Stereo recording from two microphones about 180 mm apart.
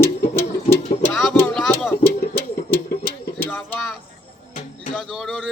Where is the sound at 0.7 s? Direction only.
35° left (ahead or behind).